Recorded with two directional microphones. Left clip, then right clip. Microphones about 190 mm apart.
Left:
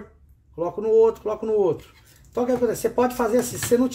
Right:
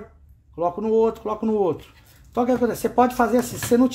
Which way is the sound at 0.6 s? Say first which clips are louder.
Left 2 dB; 25° right (ahead or behind).